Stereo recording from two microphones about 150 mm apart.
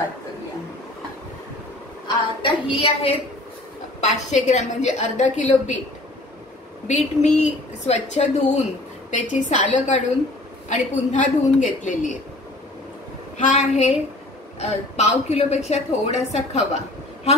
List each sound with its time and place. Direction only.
2.0 s a woman's voice: 35° left (ahead or behind)
4.0 s a woman's voice: 50° left (ahead or behind)
6.9 s a woman's voice: 50° left (ahead or behind)
13.4 s a woman's voice: 55° left (ahead or behind)